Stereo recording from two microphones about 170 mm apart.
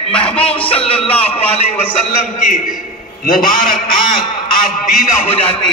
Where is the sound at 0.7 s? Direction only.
35° left (ahead or behind).